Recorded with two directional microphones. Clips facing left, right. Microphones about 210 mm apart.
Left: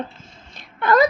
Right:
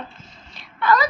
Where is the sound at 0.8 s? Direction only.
50° left (ahead or behind).